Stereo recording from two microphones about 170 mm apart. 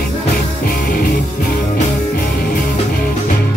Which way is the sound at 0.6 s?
60° left (ahead or behind).